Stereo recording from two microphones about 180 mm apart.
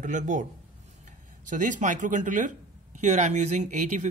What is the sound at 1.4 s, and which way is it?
Speech, 45° right (ahead or behind).